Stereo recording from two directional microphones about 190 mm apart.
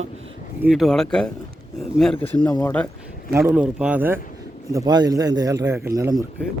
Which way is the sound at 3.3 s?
10° right (ahead or behind).